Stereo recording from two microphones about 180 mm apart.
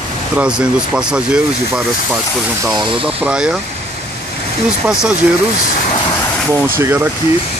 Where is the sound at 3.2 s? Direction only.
5° right (ahead or behind).